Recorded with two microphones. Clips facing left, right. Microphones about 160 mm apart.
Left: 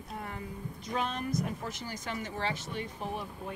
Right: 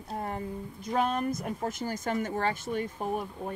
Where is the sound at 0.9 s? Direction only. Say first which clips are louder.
Right 5 dB; 50° right (ahead or behind).